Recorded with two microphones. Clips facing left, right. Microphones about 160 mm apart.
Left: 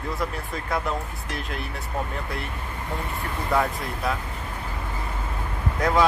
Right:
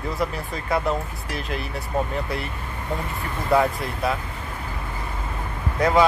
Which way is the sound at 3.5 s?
Centre (ahead or behind).